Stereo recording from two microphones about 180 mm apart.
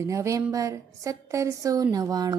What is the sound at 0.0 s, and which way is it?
A woman's voice, 15° right (ahead or behind).